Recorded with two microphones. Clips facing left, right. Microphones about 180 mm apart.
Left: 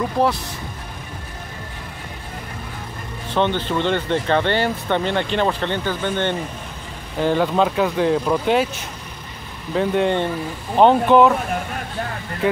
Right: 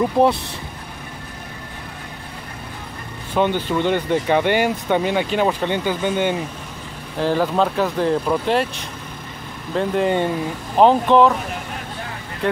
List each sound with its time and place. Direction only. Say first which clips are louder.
0.2 s speech: right 3 dB; 20° right (ahead or behind)
3.3 s speech: right 1 dB; 10° right (ahead or behind)
9.8 s speech: even; centre (ahead or behind)